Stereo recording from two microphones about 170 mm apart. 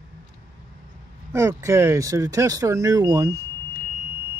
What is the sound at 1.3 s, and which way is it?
Speech, 15° right (ahead or behind).